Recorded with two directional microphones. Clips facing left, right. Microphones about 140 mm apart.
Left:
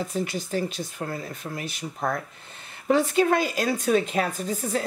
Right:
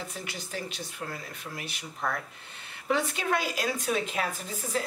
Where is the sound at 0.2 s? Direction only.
40° left (ahead or behind).